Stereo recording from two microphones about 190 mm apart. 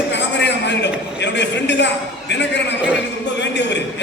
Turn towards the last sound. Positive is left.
turn(degrees=65)  # may be behind; listen again after turning